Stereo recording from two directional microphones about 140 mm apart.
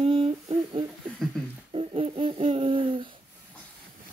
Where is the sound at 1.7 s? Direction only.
45° right (ahead or behind).